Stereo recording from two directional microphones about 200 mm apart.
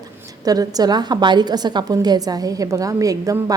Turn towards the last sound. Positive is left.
turn(degrees=-15)  # may be behind; listen again after turning